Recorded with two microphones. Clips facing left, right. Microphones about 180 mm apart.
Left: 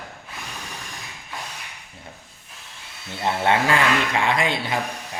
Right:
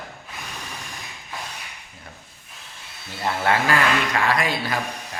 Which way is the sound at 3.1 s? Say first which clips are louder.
Left 1 dB; 25° left (ahead or behind).